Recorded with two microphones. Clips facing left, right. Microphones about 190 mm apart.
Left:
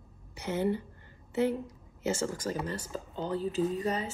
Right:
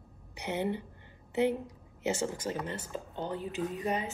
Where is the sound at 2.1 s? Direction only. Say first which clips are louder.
Left 1 dB; 20° right (ahead or behind).